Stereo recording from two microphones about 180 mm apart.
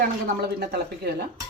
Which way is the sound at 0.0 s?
60° right (ahead or behind).